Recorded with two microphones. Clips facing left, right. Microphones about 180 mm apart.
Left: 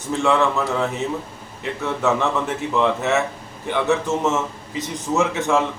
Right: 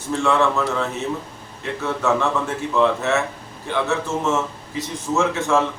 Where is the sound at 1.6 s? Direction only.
20° left (ahead or behind).